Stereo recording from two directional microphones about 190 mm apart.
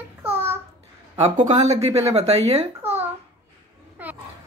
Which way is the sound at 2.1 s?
35° right (ahead or behind).